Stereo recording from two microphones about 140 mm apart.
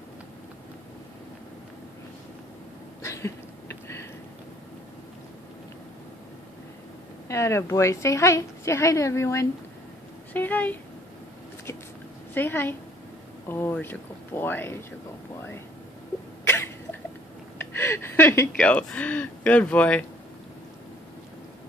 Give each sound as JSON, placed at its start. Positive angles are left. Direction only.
{"t": 3.0, "sound": "a sound", "side_deg": 20}
{"t": 7.2, "sound": "a woman's voice", "side_deg": 20}
{"t": 12.4, "sound": "speech", "side_deg": 15}
{"t": 16.4, "sound": "cough", "side_deg": 15}
{"t": 17.6, "sound": "speech", "side_deg": 15}